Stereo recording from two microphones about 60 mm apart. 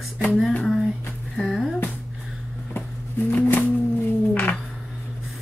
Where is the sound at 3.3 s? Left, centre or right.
Left.